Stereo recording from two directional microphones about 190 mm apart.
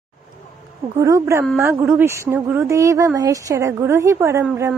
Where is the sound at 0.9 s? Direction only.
15° right (ahead or behind).